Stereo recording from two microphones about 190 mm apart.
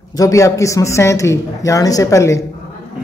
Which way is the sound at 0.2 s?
15° left (ahead or behind).